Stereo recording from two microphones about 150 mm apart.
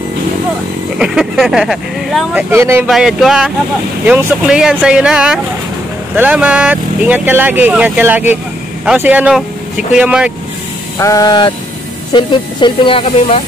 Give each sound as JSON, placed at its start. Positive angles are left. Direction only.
{"t": 0.9, "sound": "speech", "side_deg": -5}
{"t": 2.5, "sound": "speech", "side_deg": -15}
{"t": 2.9, "sound": "speech", "side_deg": 0}
{"t": 11.0, "sound": "a sound", "side_deg": 20}
{"t": 12.1, "sound": "speech", "side_deg": 30}